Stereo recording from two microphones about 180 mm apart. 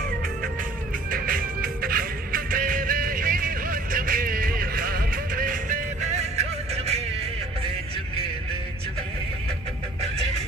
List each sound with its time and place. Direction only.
1.1 s music: 55° right (ahead or behind); by 7.2 s 35° right (ahead or behind)